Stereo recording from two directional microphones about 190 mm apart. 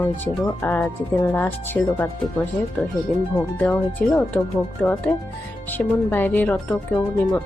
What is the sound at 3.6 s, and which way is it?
Speech, 10° left (ahead or behind).